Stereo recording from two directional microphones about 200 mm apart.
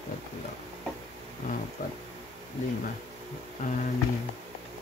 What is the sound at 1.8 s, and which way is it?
Speech, 45° left (ahead or behind).